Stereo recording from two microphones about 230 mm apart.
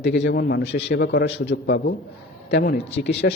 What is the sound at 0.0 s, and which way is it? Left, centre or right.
A man's voice, left.